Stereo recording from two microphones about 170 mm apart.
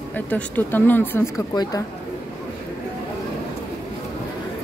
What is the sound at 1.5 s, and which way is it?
Speech, 25° left (ahead or behind).